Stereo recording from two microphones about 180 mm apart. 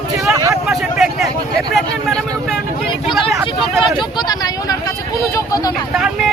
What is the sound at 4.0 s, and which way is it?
Speech, 20° left (ahead or behind).